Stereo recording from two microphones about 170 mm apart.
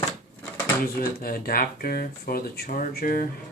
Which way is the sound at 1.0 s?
60° left (ahead or behind).